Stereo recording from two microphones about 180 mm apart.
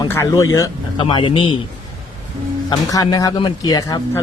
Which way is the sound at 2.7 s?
20° left (ahead or behind).